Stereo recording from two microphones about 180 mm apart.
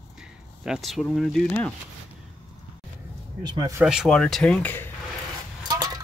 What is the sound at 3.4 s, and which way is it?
Speech, 20° right (ahead or behind).